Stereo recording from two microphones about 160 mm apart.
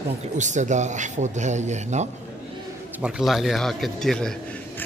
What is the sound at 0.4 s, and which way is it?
Speech, 50° right (ahead or behind).